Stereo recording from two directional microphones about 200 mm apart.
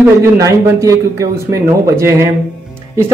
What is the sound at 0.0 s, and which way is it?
Speech, 15° right (ahead or behind).